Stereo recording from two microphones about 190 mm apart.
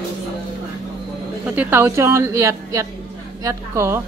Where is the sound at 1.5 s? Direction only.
10° right (ahead or behind).